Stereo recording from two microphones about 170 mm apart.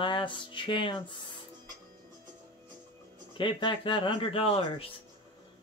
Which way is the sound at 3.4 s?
30° left (ahead or behind).